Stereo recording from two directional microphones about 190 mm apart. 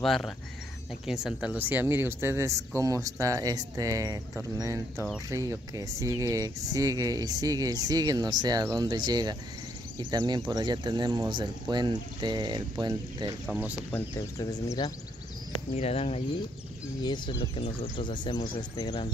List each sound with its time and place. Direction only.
0.0 s speech: centre (ahead or behind); by 13.4 s 20° right (ahead or behind)
13.5 s speech: 5° right (ahead or behind)
13.9 s speech: 15° left (ahead or behind)
15.7 s speech: 30° left (ahead or behind)